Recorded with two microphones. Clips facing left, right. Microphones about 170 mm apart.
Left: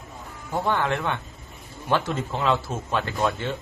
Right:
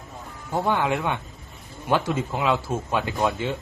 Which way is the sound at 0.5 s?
15° right (ahead or behind).